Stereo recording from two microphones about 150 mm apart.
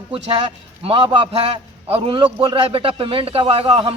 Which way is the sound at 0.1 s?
35° right (ahead or behind).